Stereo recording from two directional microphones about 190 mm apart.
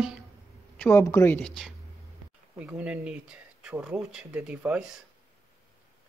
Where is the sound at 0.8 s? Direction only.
10° left (ahead or behind); by 4.9 s 5° right (ahead or behind).